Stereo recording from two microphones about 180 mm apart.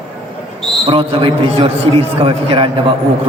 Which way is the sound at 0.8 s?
30° right (ahead or behind).